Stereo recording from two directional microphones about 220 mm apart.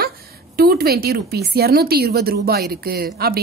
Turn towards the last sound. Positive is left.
turn(degrees=-45)  # may be behind; listen again after turning